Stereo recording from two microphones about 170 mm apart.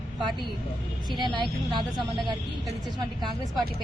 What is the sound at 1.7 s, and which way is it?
Speech, 25° right (ahead or behind).